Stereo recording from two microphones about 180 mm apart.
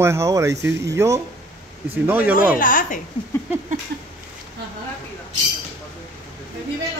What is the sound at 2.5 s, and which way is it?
Speech, 50° left (ahead or behind).